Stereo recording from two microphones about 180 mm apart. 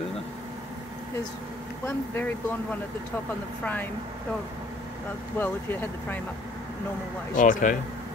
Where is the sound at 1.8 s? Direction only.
10° left (ahead or behind).